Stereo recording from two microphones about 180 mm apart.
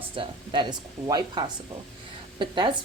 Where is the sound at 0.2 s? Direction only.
25° right (ahead or behind).